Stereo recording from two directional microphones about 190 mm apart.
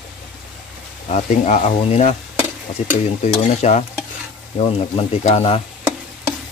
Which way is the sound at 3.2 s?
35° left (ahead or behind).